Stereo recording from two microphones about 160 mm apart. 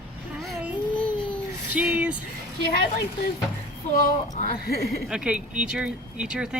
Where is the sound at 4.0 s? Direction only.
60° left (ahead or behind).